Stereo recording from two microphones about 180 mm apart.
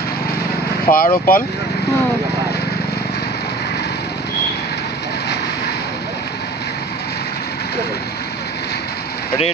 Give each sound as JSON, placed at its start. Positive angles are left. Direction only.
{"t": 0.8, "sound": "speech", "side_deg": 50}